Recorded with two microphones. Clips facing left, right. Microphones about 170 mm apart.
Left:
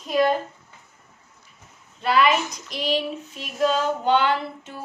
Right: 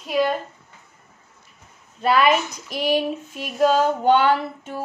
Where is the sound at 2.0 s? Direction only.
50° right (ahead or behind).